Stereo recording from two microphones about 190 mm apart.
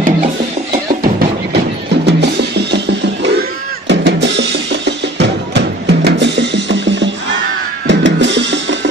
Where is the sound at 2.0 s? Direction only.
65° right (ahead or behind).